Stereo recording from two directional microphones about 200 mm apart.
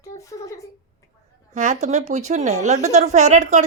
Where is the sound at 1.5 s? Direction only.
40° right (ahead or behind).